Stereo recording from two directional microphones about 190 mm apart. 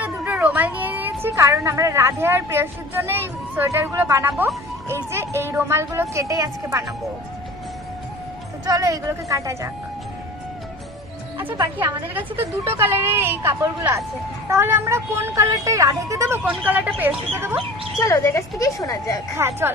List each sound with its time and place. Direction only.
0.0 s a sound: 10° right (ahead or behind)
1.2 s speech: 15° right (ahead or behind)
8.6 s speech: 20° right (ahead or behind)
11.4 s a woman's voice: 20° right (ahead or behind)
12.4 s speech: 10° right (ahead or behind)
18.0 s a woman's voice: 15° left (ahead or behind)
19.3 s speech: 15° right (ahead or behind)